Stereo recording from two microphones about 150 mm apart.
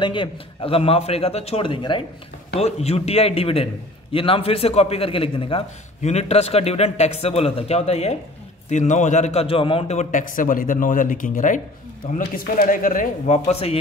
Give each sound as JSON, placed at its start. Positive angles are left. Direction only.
{"t": 0.0, "sound": "a man's voice", "side_deg": 35}
{"t": 2.5, "sound": "a man's voice", "side_deg": 45}
{"t": 13.5, "sound": "a man's voice", "side_deg": 40}